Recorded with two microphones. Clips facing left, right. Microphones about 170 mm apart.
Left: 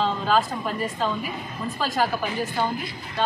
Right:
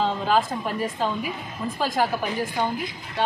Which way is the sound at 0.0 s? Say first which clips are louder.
Even; 15° right (ahead or behind).